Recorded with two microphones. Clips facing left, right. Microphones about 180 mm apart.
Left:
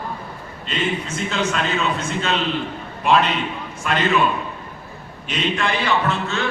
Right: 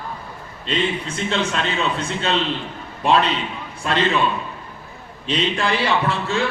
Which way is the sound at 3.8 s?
30° right (ahead or behind).